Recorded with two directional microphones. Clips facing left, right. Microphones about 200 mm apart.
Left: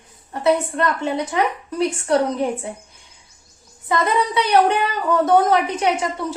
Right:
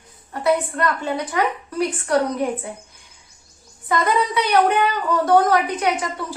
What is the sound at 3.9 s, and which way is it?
A woman's voice, 25° left (ahead or behind).